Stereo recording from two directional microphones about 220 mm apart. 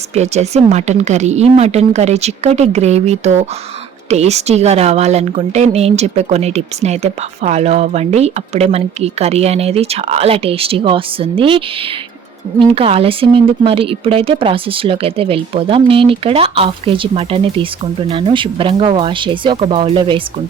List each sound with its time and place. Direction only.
0.1 s a woman's voice: 30° right (ahead or behind)